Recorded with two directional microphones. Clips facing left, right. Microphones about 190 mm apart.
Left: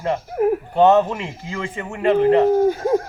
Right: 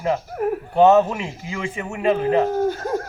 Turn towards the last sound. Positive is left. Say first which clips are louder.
# left 5 dB
turn(degrees=5)  # may be behind; listen again after turning